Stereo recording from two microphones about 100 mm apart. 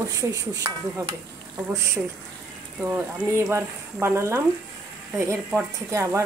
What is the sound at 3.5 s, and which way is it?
Speech, 25° right (ahead or behind).